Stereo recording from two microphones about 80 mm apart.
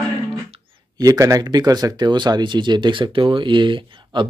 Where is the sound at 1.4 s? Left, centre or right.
Right.